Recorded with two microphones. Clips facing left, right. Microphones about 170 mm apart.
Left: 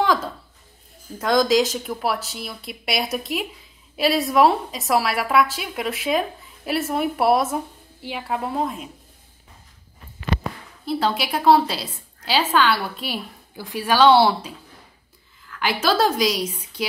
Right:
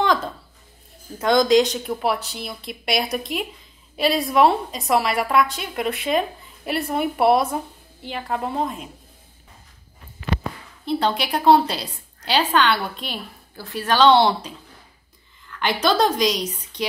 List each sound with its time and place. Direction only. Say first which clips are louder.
0.0 s a sound: even; 5° left (ahead or behind)
1.2 s a woman's voice: right 2 dB; centre (ahead or behind)
10.9 s a woman's voice: right 1 dB; 5° left (ahead or behind)